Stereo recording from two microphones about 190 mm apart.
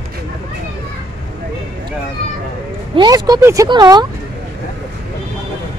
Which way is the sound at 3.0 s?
20° right (ahead or behind).